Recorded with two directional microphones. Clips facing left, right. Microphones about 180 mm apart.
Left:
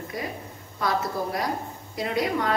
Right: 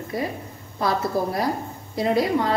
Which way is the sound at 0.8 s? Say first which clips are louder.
Right 4 dB; 30° right (ahead or behind).